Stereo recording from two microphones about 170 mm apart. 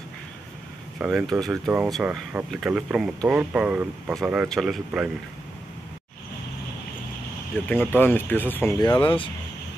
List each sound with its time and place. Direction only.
0.9 s speech: 5° right (ahead or behind)
7.5 s speech: 10° left (ahead or behind)
8.8 s speech: 25° left (ahead or behind)